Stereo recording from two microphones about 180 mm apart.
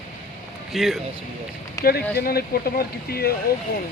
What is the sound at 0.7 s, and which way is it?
Speech, centre (ahead or behind).